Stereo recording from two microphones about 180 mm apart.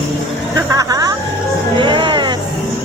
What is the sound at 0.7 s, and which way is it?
Music, 20° right (ahead or behind).